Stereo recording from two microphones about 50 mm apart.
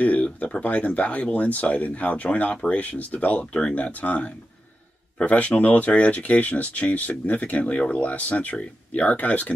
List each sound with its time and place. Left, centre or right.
0.0 s speech: left